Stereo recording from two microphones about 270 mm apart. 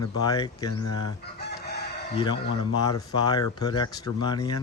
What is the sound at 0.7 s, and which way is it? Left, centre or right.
Speech, left.